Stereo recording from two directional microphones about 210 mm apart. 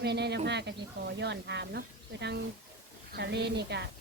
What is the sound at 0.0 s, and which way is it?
Speech, 50° right (ahead or behind).